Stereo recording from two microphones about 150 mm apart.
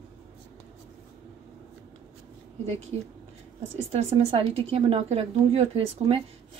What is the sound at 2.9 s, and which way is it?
Speech, 45° right (ahead or behind).